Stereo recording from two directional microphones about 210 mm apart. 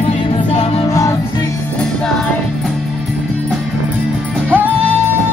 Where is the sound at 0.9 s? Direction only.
15° left (ahead or behind).